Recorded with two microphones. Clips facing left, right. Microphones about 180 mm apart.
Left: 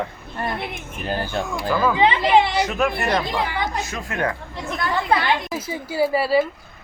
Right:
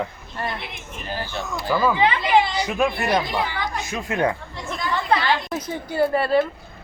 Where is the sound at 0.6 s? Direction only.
55° left (ahead or behind).